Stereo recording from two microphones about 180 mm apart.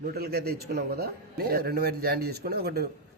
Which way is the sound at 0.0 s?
60° right (ahead or behind).